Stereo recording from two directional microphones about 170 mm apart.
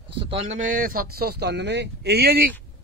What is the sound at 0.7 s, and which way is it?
Speech, 55° right (ahead or behind).